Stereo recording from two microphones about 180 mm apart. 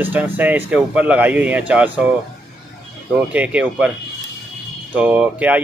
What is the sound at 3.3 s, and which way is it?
Speech, 5° right (ahead or behind).